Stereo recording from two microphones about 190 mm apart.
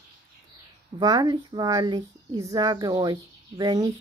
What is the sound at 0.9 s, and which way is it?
Speech, 20° right (ahead or behind).